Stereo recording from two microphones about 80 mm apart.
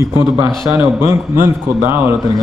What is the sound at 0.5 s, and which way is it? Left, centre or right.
Speech, centre.